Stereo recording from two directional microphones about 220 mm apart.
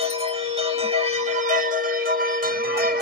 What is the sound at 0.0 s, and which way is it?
Music, 25° right (ahead or behind).